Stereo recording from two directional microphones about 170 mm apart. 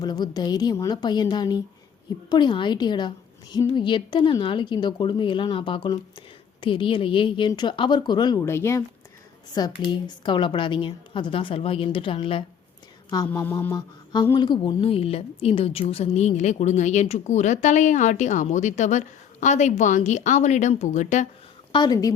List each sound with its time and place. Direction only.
0.0 s speech: 25° left (ahead or behind)
13.2 s mantra: 10° left (ahead or behind)
13.7 s mantra: 25° left (ahead or behind)
14.3 s a woman's voice: 25° left (ahead or behind); by 21.2 s 45° left (ahead or behind)
21.7 s speech: 25° left (ahead or behind)